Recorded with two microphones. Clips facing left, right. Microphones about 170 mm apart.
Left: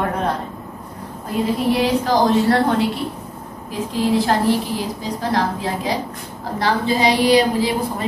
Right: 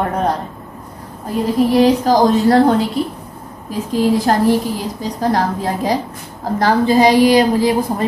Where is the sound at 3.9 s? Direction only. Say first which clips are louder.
Right 3 dB; 45° right (ahead or behind).